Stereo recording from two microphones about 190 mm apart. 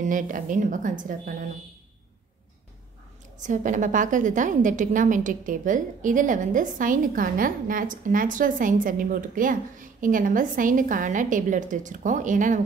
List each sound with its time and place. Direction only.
0.0 s a woman's voice: 45° right (ahead or behind)
3.3 s a woman's voice: 40° right (ahead or behind)